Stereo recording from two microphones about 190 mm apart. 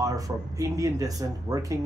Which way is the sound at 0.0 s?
20° right (ahead or behind).